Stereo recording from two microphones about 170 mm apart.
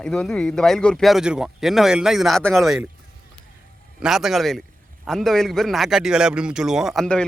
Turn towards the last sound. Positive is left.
turn(degrees=5)  # may be behind; listen again after turning